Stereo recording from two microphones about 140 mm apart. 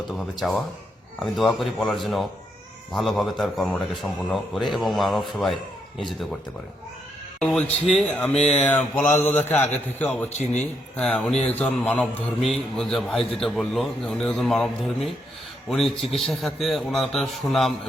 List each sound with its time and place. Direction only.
0.1 s a man's voice: centre (ahead or behind)
7.3 s a man's voice: 5° left (ahead or behind)
10.2 s speech: 55° left (ahead or behind)
10.6 s a man's voice: 10° left (ahead or behind)